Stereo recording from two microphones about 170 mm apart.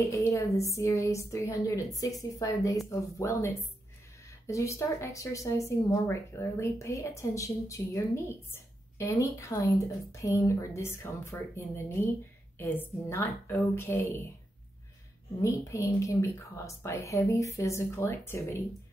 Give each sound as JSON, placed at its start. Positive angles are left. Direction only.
{"t": 0.0, "sound": "a woman's voice", "side_deg": 15}
{"t": 15.4, "sound": "speech", "side_deg": 15}